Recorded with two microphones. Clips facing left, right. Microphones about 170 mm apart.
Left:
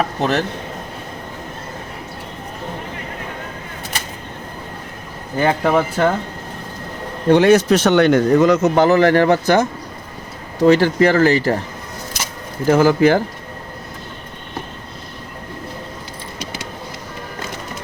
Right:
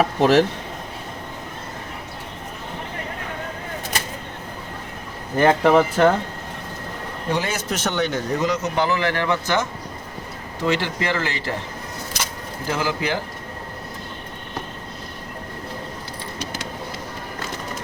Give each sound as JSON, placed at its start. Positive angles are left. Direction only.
{"t": 0.0, "sound": "speech", "side_deg": -5}
{"t": 5.4, "sound": "speech", "side_deg": 0}
{"t": 7.3, "sound": "speech", "side_deg": 70}
{"t": 12.7, "sound": "speech", "side_deg": 50}